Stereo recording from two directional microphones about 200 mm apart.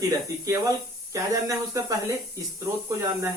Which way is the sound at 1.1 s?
15° right (ahead or behind).